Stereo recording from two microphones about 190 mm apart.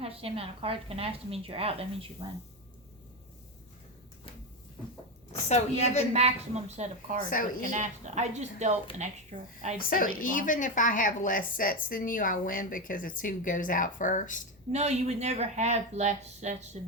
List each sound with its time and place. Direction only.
0.0 s a woman's voice: 30° right (ahead or behind)
5.5 s a woman's voice: 35° left (ahead or behind)
6.1 s a woman's voice: 35° right (ahead or behind)
9.7 s a woman's voice: 50° left (ahead or behind)
14.7 s a woman's voice: 35° right (ahead or behind)